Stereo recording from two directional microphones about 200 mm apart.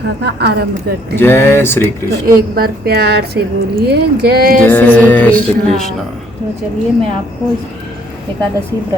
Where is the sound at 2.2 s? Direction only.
45° right (ahead or behind).